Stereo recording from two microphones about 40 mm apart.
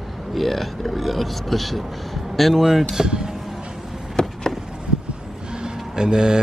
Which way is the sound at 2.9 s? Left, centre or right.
Centre.